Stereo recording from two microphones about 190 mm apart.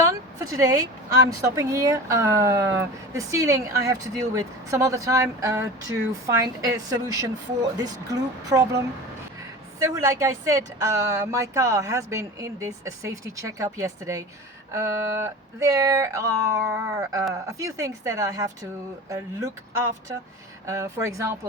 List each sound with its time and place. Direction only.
0.0 s a woman's voice: 15° right (ahead or behind)
9.8 s a woman's voice: 15° right (ahead or behind)
20.7 s a woman's voice: 15° right (ahead or behind)